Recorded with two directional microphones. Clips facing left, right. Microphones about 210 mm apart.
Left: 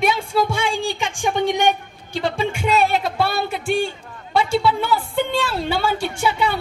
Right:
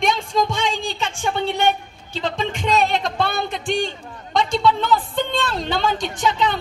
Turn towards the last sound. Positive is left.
turn(degrees=10)  # may be behind; listen again after turning